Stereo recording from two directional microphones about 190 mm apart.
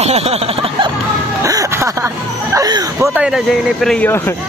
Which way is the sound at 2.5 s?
20° right (ahead or behind).